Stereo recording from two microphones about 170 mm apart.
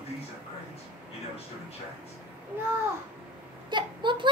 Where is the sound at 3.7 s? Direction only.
30° right (ahead or behind).